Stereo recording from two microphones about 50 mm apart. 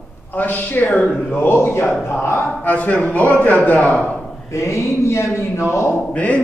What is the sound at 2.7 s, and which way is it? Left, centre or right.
A man's voice, left.